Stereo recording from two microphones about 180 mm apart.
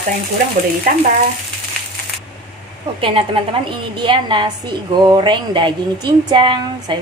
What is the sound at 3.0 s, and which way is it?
Speech, 30° right (ahead or behind).